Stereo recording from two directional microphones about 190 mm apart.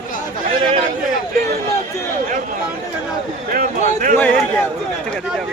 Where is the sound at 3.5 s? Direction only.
45° right (ahead or behind).